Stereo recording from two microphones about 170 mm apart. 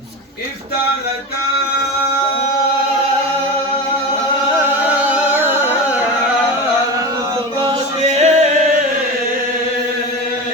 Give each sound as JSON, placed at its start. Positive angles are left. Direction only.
{"t": 4.7, "sound": "music", "side_deg": -10}
{"t": 7.6, "sound": "music", "side_deg": -35}